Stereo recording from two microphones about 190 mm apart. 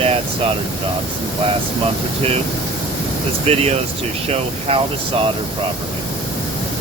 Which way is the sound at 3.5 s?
30° right (ahead or behind).